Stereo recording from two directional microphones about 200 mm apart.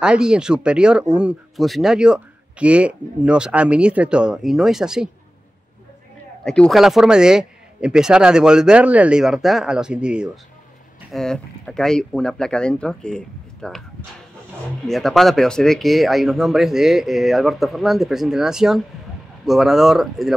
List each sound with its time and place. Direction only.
0.0 s speech: 5° right (ahead or behind)
6.4 s speech: 5° left (ahead or behind)
14.9 s speech: centre (ahead or behind)